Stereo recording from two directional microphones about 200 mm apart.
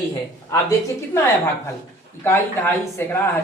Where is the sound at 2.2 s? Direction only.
10° left (ahead or behind).